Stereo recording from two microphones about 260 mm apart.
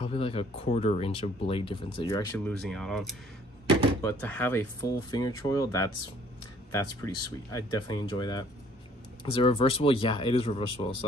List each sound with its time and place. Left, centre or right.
0.0 s speech: left